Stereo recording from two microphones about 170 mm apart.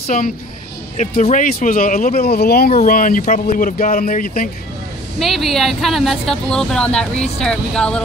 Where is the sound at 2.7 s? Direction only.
50° left (ahead or behind).